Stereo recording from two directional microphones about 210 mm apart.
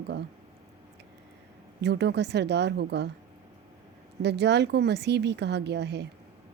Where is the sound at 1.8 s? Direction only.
55° right (ahead or behind).